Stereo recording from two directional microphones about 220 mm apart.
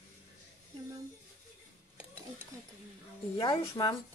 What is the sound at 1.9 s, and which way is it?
Dishes, 10° right (ahead or behind).